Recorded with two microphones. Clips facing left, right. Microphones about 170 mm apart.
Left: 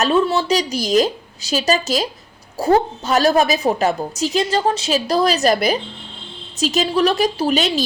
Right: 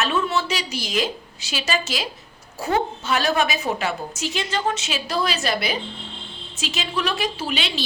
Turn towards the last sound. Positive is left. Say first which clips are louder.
# left 9 dB
turn(degrees=40)  # may be behind; listen again after turning